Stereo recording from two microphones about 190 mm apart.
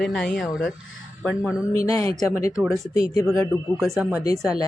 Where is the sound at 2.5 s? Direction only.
Centre (ahead or behind).